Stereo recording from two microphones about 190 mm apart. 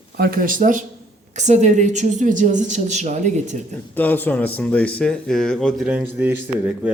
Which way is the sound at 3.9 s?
10° left (ahead or behind).